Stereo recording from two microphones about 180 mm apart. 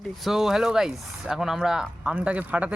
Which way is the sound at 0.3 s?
Centre (ahead or behind).